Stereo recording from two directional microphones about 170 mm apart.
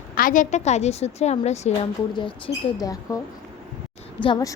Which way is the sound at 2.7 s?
20° left (ahead or behind).